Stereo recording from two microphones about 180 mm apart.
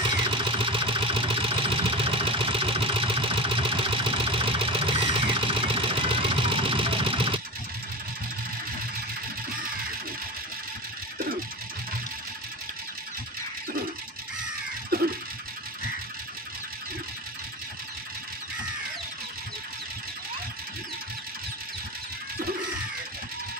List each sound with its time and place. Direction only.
0.0 s vehicle: 30° right (ahead or behind)
14.9 s giggle: 60° right (ahead or behind)